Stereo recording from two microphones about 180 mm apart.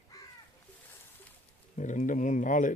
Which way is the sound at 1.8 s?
45° left (ahead or behind).